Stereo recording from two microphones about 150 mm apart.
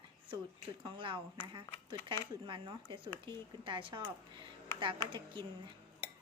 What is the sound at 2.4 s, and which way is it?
Speech, 30° right (ahead or behind).